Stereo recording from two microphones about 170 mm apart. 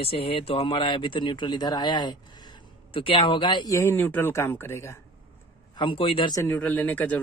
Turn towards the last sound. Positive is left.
turn(degrees=10)  # may be behind; listen again after turning